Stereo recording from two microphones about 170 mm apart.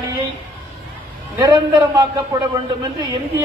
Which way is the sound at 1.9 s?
20° right (ahead or behind).